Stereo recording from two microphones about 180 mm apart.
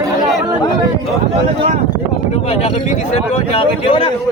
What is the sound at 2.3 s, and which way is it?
Speech, 35° left (ahead or behind).